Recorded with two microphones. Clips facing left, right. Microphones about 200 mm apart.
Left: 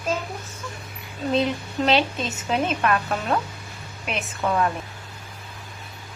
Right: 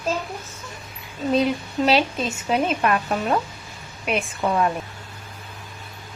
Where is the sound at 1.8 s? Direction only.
5° right (ahead or behind).